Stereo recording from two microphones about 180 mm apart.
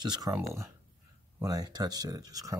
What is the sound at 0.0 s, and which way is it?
Speech, 20° right (ahead or behind).